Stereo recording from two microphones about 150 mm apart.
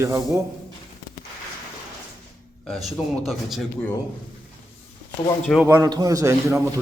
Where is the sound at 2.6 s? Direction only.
Centre (ahead or behind).